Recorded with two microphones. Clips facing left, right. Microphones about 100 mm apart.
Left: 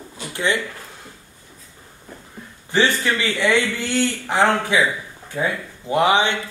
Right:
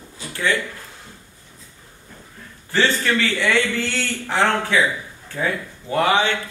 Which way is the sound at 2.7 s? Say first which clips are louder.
Left 1 dB; 15° left (ahead or behind).